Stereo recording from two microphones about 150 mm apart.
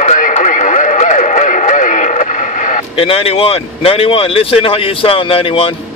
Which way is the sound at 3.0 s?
40° left (ahead or behind).